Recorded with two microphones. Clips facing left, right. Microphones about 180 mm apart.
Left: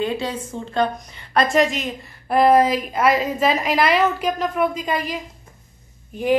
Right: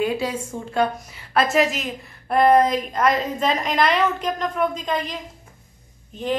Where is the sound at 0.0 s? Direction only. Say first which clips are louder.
Right 1 dB; 10° right (ahead or behind).